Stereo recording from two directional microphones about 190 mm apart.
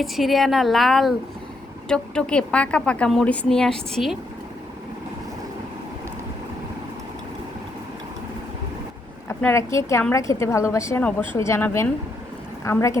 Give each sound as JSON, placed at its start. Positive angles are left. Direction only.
{"t": 0.0, "sound": "a woman's voice", "side_deg": 0}
{"t": 9.4, "sound": "a woman's voice", "side_deg": 15}